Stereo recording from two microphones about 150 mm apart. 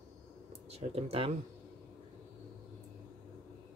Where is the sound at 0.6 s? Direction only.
45° right (ahead or behind).